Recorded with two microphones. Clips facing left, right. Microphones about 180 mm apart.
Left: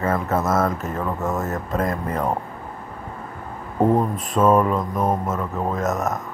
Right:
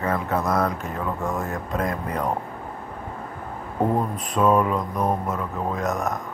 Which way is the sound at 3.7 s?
20° left (ahead or behind).